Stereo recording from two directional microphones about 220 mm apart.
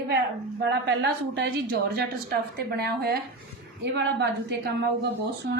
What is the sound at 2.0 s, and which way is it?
A woman's voice, 45° right (ahead or behind).